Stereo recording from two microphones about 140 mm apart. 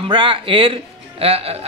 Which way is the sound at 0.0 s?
35° right (ahead or behind).